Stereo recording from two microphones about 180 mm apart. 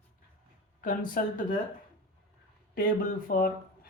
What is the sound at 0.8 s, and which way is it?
Speech, 50° left (ahead or behind).